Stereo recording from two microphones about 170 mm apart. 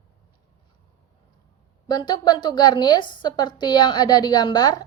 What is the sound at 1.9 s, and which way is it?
A woman's voice, 25° left (ahead or behind).